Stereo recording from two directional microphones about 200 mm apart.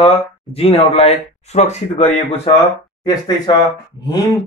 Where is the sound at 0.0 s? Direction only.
30° left (ahead or behind).